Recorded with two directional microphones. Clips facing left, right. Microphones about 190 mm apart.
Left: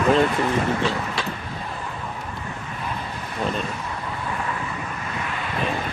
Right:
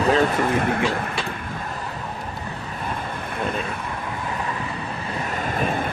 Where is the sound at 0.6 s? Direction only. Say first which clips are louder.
Right 1 dB; 55° right (ahead or behind).